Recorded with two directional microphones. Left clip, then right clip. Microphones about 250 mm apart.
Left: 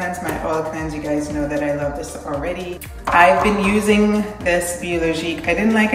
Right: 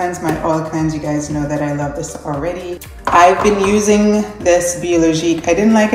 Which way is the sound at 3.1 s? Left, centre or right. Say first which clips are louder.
Right 3 dB; centre.